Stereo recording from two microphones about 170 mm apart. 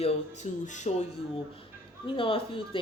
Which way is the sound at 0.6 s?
45° left (ahead or behind).